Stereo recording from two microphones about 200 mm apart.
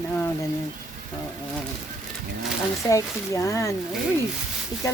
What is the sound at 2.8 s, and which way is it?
Speech, 15° left (ahead or behind).